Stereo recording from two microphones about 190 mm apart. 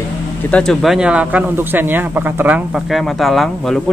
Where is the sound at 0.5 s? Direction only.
Centre (ahead or behind).